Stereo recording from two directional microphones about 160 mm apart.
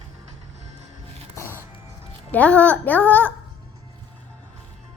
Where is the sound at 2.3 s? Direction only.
10° left (ahead or behind).